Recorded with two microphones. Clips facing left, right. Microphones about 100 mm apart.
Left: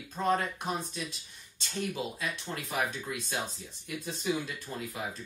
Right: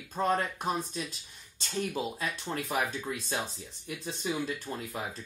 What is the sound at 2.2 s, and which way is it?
Speech, 40° right (ahead or behind).